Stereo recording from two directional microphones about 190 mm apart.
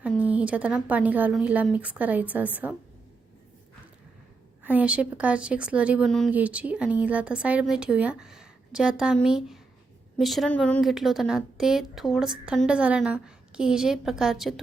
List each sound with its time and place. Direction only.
0.3 s speech: 5° right (ahead or behind)
4.6 s a woman's voice: 10° right (ahead or behind)